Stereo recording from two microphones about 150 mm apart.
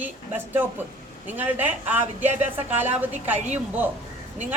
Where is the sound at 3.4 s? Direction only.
50° right (ahead or behind).